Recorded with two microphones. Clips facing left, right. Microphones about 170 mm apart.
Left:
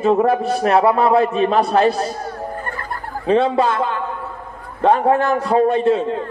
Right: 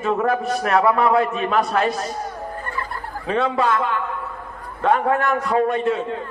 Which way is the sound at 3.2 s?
30° left (ahead or behind).